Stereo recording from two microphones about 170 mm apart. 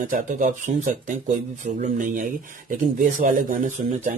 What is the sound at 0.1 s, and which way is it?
Speech, 50° right (ahead or behind).